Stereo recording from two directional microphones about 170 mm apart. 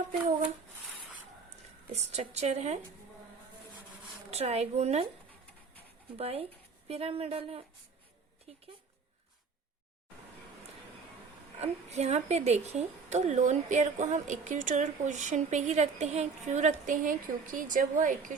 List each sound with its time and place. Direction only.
0.1 s hands: 40° right (ahead or behind)
1.9 s speech: 40° right (ahead or behind)
4.3 s speech: 40° right (ahead or behind)
6.1 s speech: 35° right (ahead or behind)
11.6 s a woman's voice: 40° right (ahead or behind)